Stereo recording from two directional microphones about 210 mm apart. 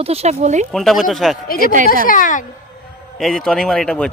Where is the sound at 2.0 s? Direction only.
40° left (ahead or behind).